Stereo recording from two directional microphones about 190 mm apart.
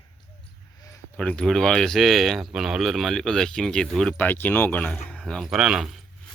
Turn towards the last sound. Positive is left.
turn(degrees=-5)  # may be behind; listen again after turning